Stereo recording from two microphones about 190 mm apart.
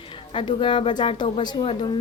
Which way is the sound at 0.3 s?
25° left (ahead or behind).